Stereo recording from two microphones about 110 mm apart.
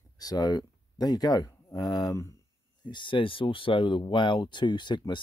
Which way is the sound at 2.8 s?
45° left (ahead or behind).